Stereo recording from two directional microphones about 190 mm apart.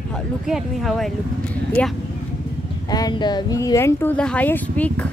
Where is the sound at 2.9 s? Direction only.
20° left (ahead or behind).